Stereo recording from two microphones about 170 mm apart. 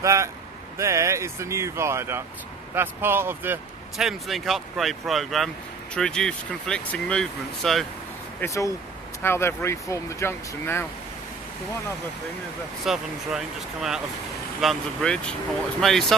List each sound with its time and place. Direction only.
0.0 s speech: 15° right (ahead or behind)
3.9 s speech: centre (ahead or behind)
8.4 s speech: 15° left (ahead or behind)
12.8 s speech: centre (ahead or behind)